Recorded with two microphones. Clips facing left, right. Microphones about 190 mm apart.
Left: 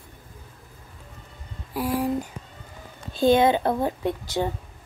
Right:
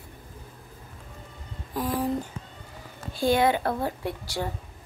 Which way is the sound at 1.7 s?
10° left (ahead or behind).